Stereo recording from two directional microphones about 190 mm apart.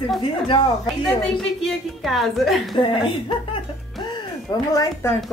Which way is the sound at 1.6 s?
Centre (ahead or behind).